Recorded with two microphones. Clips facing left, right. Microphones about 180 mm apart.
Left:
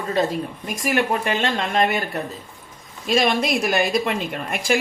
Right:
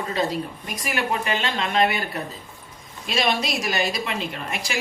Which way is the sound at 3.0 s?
50° left (ahead or behind).